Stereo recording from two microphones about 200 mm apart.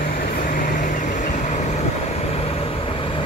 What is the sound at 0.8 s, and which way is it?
Vehicle, 40° left (ahead or behind).